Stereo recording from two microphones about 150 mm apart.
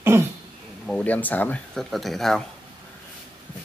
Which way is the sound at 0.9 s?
10° left (ahead or behind).